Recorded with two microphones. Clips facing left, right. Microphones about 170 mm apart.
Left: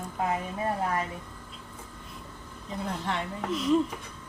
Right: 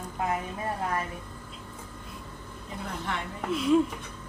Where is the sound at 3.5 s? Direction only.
5° right (ahead or behind).